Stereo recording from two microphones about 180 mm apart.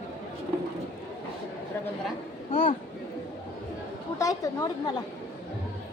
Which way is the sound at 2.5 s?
45° left (ahead or behind).